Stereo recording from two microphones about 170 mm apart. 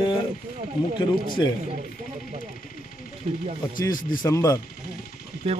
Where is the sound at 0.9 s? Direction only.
25° left (ahead or behind).